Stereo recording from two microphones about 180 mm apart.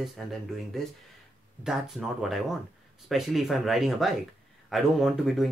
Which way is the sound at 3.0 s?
Centre (ahead or behind).